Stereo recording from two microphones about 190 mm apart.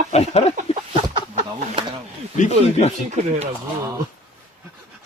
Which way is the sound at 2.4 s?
35° left (ahead or behind).